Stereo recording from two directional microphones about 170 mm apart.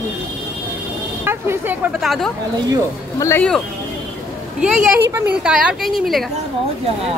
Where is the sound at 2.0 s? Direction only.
Centre (ahead or behind).